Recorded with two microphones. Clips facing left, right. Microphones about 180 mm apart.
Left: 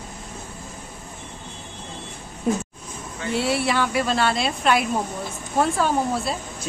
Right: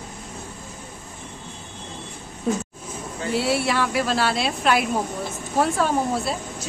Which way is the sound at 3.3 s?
Centre (ahead or behind).